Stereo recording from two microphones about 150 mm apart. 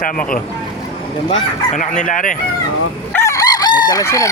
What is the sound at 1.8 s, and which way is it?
Speech, 60° left (ahead or behind).